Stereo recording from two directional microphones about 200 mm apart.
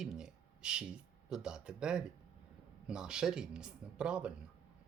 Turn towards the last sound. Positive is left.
turn(degrees=-5)  # may be behind; listen again after turning